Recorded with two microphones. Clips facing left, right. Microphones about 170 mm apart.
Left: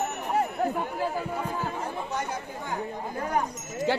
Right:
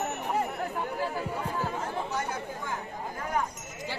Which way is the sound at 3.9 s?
70° left (ahead or behind).